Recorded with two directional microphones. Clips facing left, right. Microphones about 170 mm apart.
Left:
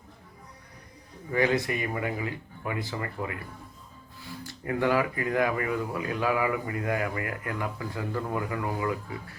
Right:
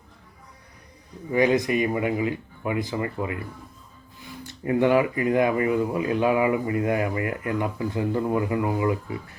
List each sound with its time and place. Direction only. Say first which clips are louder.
1.3 s speech: right 5 dB; 20° right (ahead or behind)